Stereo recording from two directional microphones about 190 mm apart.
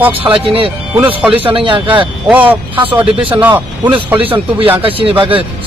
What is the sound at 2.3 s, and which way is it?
Speech, 10° right (ahead or behind).